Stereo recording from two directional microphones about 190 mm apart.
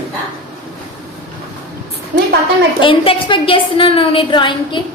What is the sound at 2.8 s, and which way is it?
A woman's voice, 30° left (ahead or behind).